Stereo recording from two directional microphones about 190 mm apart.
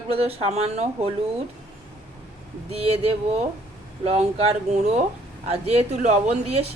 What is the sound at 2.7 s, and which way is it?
Speech, 35° right (ahead or behind).